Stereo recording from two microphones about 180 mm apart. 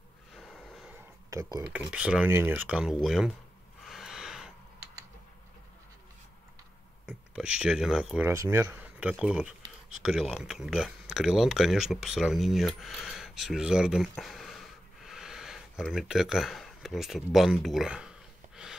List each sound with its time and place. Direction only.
0.3 s snort: centre (ahead or behind)
1.3 s speech: 15° right (ahead or behind)
1.7 s speech: 5° right (ahead or behind)
3.8 s gasp: centre (ahead or behind)
7.1 s speech: 5° right (ahead or behind)
8.3 s speech: 15° right (ahead or behind)